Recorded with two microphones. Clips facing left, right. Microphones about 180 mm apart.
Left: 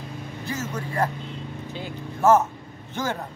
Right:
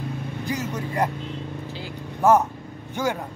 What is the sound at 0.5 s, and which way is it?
Speech, 15° right (ahead or behind).